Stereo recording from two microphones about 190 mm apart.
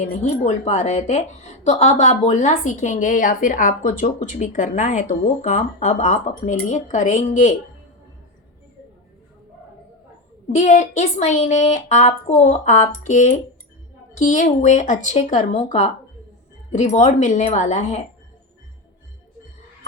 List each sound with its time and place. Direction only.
0.2 s a woman's voice: 35° left (ahead or behind)
10.5 s a woman's voice: 40° left (ahead or behind)